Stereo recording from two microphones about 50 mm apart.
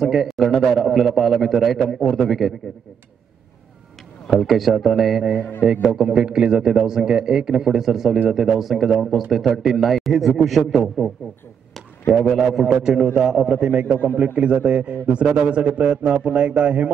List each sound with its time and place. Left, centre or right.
0.0 s a man's voice: centre
4.4 s a man's voice: centre
5.6 s a man's voice: centre
12.2 s a man's voice: centre
14.0 s a man's voice: right